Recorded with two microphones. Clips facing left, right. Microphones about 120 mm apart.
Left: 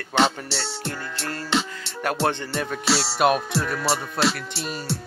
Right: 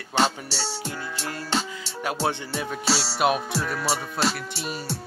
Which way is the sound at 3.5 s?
10° right (ahead or behind).